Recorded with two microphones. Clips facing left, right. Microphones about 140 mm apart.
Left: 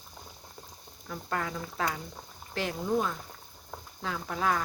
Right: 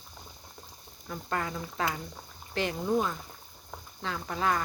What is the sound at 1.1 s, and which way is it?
Speech, centre (ahead or behind).